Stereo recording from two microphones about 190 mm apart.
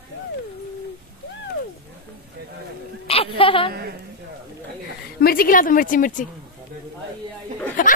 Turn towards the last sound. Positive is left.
turn(degrees=45)  # may be behind; listen again after turning